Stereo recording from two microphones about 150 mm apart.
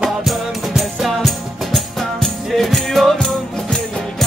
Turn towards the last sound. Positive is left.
turn(degrees=5)  # may be behind; listen again after turning